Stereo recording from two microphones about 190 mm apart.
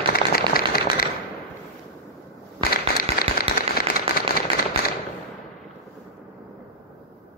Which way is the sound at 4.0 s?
50° left (ahead or behind).